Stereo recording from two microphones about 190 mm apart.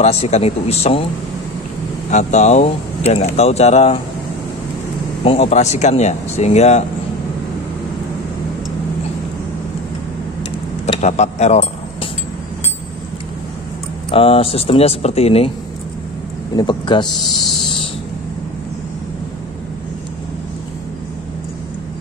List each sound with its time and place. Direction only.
0.0 s speech: 35° left (ahead or behind)
2.0 s speech: 40° left (ahead or behind)
5.2 s speech: 30° left (ahead or behind)
10.9 s speech: 35° left (ahead or behind)
14.1 s speech: 30° left (ahead or behind)
16.5 s a man's voice: 25° left (ahead or behind)